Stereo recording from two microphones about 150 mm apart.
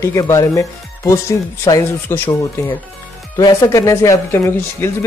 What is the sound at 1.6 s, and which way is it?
Speech, 15° left (ahead or behind).